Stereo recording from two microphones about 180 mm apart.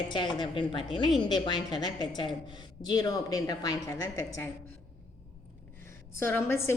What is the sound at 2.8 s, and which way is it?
Speech, 20° left (ahead or behind).